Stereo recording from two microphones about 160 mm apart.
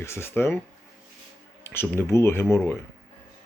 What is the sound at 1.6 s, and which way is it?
Speech, 15° left (ahead or behind).